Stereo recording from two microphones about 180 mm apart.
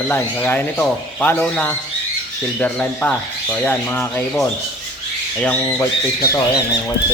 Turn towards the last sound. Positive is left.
turn(degrees=20)  # may be behind; listen again after turning